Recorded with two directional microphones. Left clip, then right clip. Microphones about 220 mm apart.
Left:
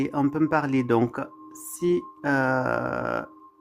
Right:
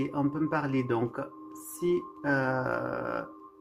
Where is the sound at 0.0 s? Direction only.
50° left (ahead or behind).